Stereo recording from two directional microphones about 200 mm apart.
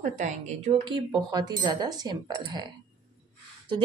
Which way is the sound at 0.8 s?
20° right (ahead or behind).